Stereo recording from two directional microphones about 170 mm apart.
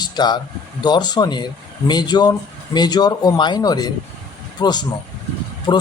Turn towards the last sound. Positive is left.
turn(degrees=25)  # may be behind; listen again after turning